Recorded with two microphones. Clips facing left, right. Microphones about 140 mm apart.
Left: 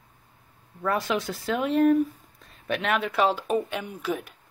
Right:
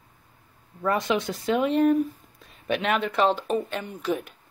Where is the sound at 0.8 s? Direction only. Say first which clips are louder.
Right 2 dB; centre (ahead or behind).